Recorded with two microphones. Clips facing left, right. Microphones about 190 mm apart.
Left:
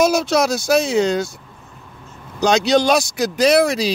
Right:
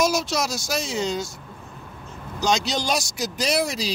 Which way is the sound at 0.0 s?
60° left (ahead or behind).